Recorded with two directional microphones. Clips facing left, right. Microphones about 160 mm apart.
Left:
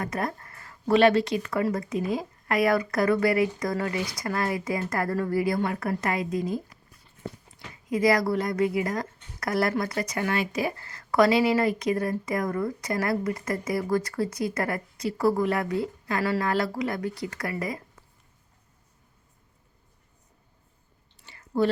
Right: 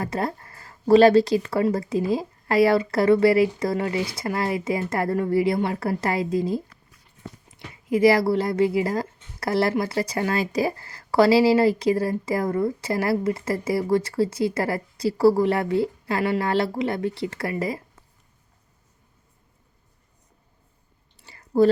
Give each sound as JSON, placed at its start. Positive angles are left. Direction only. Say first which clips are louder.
{"t": 0.0, "sound": "speech", "louder": "right 3 dB", "side_deg": -30}
{"t": 7.9, "sound": "speech", "louder": "right 5 dB", "side_deg": -30}
{"t": 21.2, "sound": "chewing", "louder": "right 6 dB", "side_deg": -40}